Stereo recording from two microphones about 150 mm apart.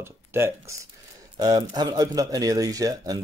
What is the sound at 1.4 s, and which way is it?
Speech, 25° right (ahead or behind).